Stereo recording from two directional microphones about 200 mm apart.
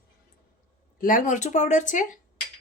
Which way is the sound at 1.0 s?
40° left (ahead or behind).